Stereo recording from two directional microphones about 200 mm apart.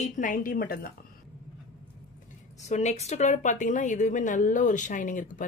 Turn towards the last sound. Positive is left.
turn(degrees=40)  # may be behind; listen again after turning